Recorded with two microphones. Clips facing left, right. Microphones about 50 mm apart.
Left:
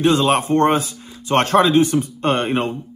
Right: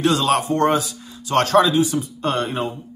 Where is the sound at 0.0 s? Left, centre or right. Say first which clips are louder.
Left 2 dB; left.